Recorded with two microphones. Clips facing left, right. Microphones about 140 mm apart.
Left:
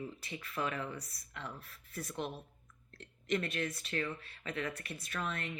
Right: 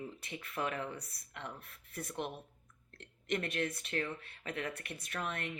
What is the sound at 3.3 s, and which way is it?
Speech, 60° right (ahead or behind).